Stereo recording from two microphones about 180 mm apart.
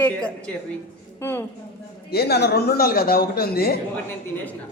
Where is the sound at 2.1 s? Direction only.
65° left (ahead or behind).